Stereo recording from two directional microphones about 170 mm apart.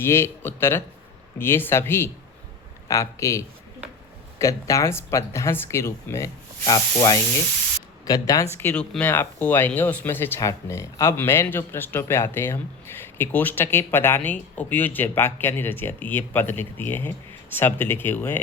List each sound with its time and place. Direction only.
0.0 s speech: 15° left (ahead or behind)